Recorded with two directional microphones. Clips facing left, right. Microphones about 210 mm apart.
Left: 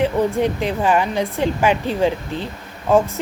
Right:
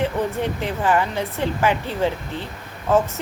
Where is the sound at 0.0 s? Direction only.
15° left (ahead or behind).